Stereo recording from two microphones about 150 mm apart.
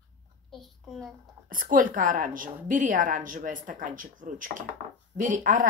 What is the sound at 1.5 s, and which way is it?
A woman's voice, 65° right (ahead or behind).